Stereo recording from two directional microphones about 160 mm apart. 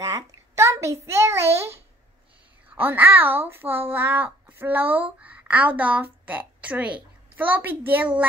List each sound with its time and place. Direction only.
0.0 s a child's voice: 20° right (ahead or behind)